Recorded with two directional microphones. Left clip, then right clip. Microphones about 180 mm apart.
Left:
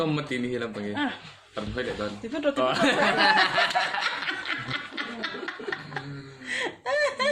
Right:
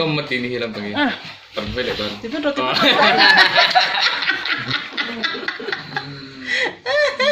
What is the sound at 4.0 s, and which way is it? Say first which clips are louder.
Snicker: right 10 dB; 55° left (ahead or behind).